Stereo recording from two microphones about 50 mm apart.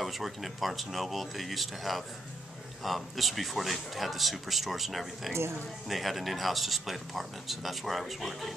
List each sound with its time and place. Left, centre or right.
0.0 s speech: centre
5.3 s speech: right
5.9 s speech: centre